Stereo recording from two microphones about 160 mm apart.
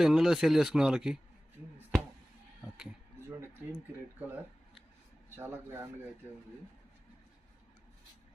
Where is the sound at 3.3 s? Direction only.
15° right (ahead or behind).